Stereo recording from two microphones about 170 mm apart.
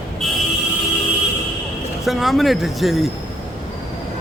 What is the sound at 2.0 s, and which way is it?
Speech, centre (ahead or behind).